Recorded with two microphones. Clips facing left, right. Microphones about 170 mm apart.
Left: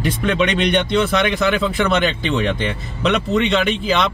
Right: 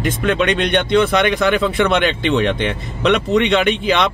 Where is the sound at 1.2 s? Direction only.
Centre (ahead or behind).